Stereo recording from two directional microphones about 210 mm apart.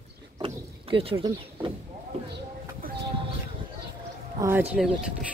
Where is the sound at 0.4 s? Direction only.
25° right (ahead or behind).